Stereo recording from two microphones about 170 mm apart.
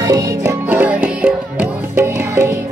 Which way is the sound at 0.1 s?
15° right (ahead or behind).